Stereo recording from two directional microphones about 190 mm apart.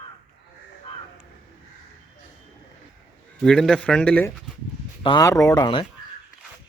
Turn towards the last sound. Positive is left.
turn(degrees=25)  # may be behind; listen again after turning